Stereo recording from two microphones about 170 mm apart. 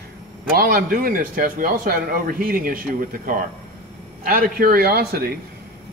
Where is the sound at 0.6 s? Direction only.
60° right (ahead or behind).